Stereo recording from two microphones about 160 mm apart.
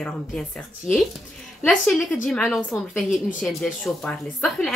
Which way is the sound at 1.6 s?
10° left (ahead or behind).